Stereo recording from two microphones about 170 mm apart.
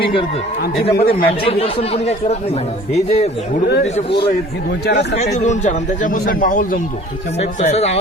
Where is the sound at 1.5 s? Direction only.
35° left (ahead or behind); by 6.8 s 50° left (ahead or behind).